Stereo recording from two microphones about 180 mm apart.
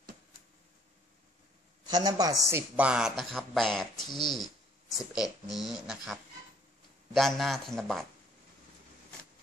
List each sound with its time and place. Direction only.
1.9 s a man's voice: 25° right (ahead or behind); by 4.0 s centre (ahead or behind)
4.0 s speech: 25° left (ahead or behind)
4.3 s a sound: centre (ahead or behind)
5.5 s a man's voice: centre (ahead or behind)
7.2 s a man's voice: centre (ahead or behind)